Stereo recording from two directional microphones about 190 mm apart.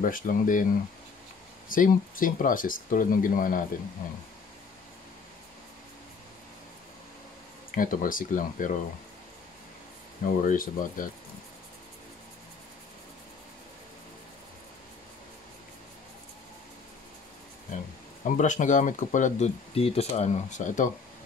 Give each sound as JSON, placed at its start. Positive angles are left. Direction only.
{"t": 0.0, "sound": "speech", "side_deg": 45}
{"t": 1.7, "sound": "speech", "side_deg": 45}
{"t": 7.7, "sound": "speech", "side_deg": 45}
{"t": 10.2, "sound": "speech", "side_deg": 45}
{"t": 18.2, "sound": "speech", "side_deg": 40}